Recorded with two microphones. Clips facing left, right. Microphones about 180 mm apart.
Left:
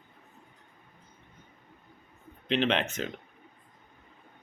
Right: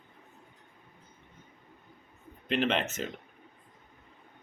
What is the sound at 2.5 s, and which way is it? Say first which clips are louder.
Speech: left 1 dB; 5° right (ahead or behind).